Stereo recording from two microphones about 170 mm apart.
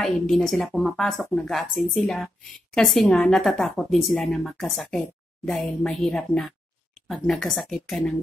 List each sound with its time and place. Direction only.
0.0 s a woman's voice: centre (ahead or behind)